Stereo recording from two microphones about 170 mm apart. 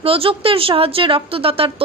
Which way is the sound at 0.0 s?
35° right (ahead or behind).